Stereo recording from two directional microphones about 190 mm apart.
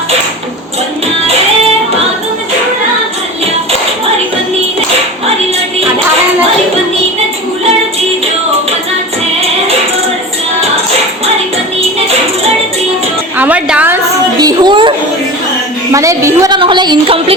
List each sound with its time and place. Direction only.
13.3 s music: 10° right (ahead or behind)
14.3 s a sound: 20° right (ahead or behind)
15.9 s a woman's voice: 15° right (ahead or behind)